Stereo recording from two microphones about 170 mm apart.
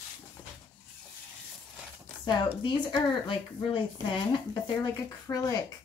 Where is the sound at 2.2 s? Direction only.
30° left (ahead or behind).